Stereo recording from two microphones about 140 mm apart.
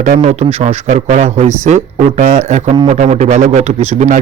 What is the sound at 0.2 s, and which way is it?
Speech, 55° right (ahead or behind).